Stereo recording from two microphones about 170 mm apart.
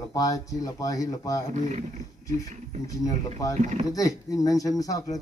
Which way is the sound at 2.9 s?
20° left (ahead or behind).